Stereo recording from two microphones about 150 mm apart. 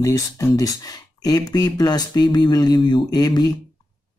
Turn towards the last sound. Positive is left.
turn(degrees=25)  # may be behind; listen again after turning